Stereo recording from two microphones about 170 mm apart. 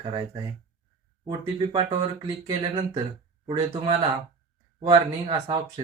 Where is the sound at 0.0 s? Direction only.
30° right (ahead or behind).